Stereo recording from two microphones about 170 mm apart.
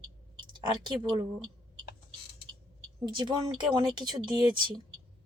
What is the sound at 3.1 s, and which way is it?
Speech, 25° right (ahead or behind).